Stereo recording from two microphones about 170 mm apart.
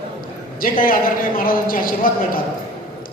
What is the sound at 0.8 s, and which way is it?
A woman's voice, 60° left (ahead or behind).